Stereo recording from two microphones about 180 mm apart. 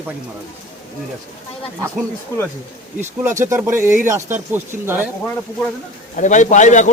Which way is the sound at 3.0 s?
15° right (ahead or behind).